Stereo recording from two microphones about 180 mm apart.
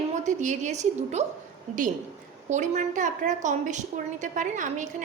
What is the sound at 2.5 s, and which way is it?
A woman's voice, 40° right (ahead or behind).